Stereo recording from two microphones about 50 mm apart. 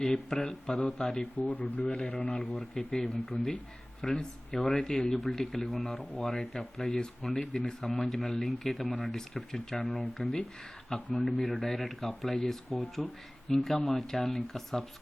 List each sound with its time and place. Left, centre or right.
0.0 s speech: centre
1.4 s speech: left
1.9 s speech: centre